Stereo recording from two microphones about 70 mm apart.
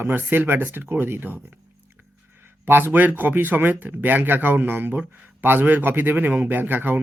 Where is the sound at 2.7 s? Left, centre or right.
Right.